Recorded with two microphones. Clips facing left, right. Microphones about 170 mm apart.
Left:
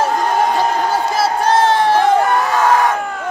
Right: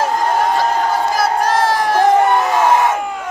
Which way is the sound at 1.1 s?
25° left (ahead or behind).